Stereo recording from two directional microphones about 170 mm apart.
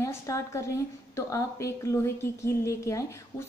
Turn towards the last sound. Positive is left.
turn(degrees=15)  # may be behind; listen again after turning